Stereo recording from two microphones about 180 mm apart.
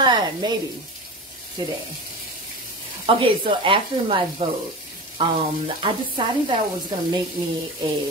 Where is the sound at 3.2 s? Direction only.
30° right (ahead or behind).